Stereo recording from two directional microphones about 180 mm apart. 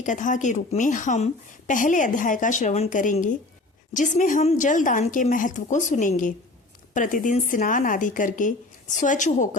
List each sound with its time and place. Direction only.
0.0 s a woman's voice: 45° left (ahead or behind)